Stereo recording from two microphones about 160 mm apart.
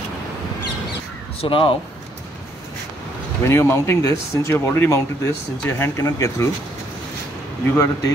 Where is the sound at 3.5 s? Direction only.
15° left (ahead or behind).